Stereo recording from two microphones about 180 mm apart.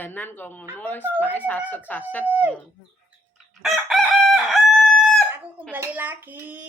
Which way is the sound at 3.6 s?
Centre (ahead or behind).